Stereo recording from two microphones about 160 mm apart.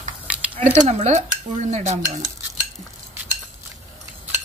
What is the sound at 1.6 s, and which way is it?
Speech, 45° right (ahead or behind).